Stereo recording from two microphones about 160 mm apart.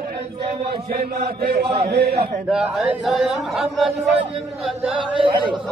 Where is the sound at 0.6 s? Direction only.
65° right (ahead or behind); by 2.3 s 85° right.